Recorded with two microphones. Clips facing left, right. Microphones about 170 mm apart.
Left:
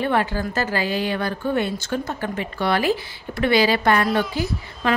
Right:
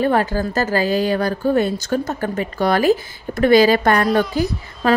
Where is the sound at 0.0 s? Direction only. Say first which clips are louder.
Right 4 dB; 40° right (ahead or behind).